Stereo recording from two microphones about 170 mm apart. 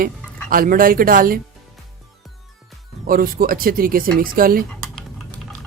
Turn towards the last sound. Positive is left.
turn(degrees=-55)  # may be behind; listen again after turning